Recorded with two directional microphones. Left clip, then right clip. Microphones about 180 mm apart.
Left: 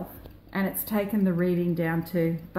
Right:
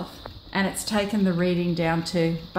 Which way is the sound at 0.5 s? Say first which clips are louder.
Right 4 dB; centre (ahead or behind).